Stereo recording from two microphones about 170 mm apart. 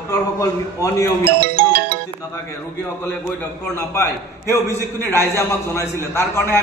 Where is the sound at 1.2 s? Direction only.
65° right (ahead or behind).